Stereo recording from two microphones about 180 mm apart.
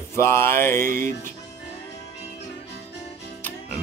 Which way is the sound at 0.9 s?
50° right (ahead or behind).